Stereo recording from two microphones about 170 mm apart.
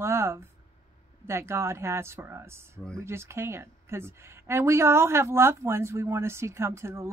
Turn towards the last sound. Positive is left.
turn(degrees=-15)  # may be behind; listen again after turning